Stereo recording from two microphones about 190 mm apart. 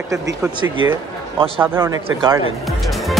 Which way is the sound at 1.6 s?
10° right (ahead or behind).